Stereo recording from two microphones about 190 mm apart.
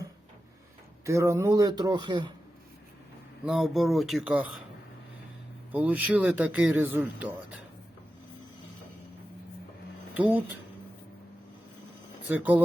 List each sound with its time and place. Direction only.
1.0 s speech: 15° right (ahead or behind)
3.4 s speech: centre (ahead or behind)
5.7 s speech: 10° right (ahead or behind)
10.2 s speech: 10° right (ahead or behind)
12.3 s speech: 10° right (ahead or behind)